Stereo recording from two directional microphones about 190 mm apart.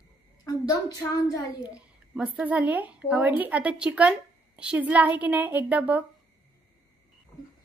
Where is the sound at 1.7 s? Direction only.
5° right (ahead or behind).